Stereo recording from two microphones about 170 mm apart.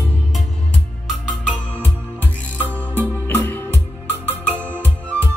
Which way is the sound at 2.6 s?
10° left (ahead or behind).